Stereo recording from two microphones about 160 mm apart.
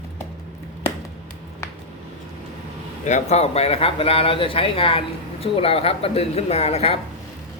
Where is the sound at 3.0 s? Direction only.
45° left (ahead or behind).